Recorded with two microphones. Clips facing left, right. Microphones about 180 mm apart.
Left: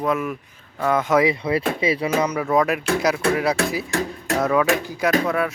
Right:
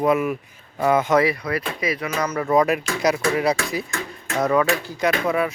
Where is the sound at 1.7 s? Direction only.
30° left (ahead or behind).